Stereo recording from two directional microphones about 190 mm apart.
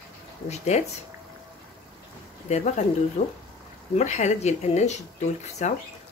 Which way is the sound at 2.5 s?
35° left (ahead or behind).